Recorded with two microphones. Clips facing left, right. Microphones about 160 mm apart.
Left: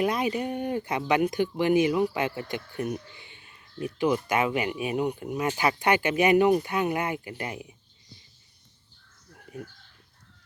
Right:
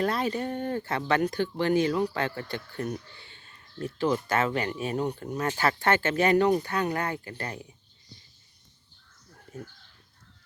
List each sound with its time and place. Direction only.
0.0 s speech: 15° left (ahead or behind)